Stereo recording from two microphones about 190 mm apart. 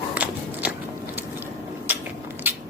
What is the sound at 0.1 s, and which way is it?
Walk, 5° right (ahead or behind).